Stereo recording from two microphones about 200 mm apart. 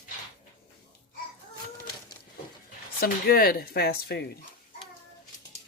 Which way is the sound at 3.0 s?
50° left (ahead or behind).